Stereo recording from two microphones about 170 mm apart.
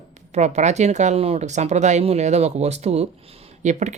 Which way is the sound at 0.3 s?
40° right (ahead or behind).